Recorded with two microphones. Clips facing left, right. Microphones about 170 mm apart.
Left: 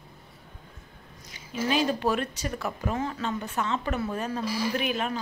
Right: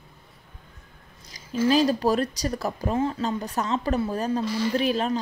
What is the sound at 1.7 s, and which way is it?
A woman's voice, 35° right (ahead or behind).